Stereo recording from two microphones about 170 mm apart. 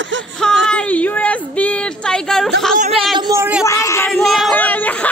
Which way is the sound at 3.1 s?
25° right (ahead or behind).